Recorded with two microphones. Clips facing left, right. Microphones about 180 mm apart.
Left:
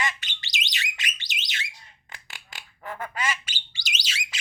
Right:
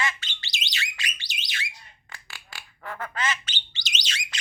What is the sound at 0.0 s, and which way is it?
Alarm, 15° left (ahead or behind).